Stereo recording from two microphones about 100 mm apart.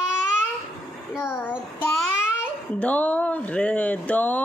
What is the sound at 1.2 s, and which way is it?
Child singing, 20° left (ahead or behind).